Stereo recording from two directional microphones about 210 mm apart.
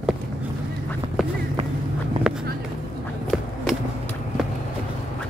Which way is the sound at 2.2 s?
25° right (ahead or behind).